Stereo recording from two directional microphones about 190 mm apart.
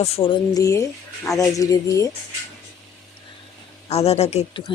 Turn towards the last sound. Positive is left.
turn(degrees=35)  # may be behind; listen again after turning